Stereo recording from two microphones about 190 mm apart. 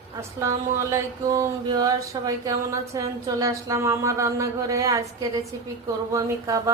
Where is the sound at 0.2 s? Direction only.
15° right (ahead or behind).